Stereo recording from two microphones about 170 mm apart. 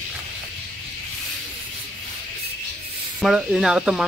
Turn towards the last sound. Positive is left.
turn(degrees=-5)  # may be behind; listen again after turning